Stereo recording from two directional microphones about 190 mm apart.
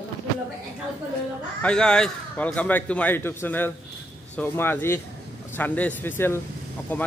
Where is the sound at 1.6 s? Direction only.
5° left (ahead or behind).